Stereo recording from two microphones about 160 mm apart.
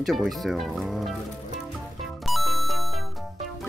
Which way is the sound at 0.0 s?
Centre (ahead or behind).